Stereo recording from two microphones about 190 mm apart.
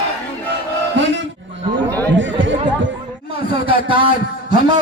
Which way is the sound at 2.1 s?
80° right.